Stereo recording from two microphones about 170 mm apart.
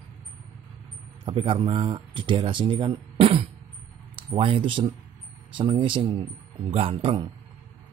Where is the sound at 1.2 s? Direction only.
30° right (ahead or behind).